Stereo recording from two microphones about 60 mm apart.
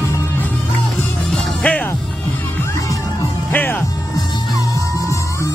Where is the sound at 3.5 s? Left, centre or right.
Left.